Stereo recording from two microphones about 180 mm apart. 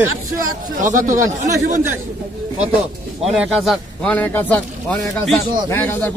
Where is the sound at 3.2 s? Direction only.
5° right (ahead or behind).